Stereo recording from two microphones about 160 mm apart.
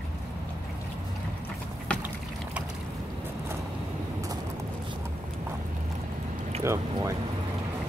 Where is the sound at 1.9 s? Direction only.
5° left (ahead or behind).